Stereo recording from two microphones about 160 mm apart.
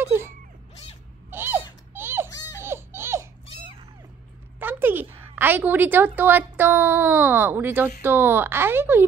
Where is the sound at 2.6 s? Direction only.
15° right (ahead or behind).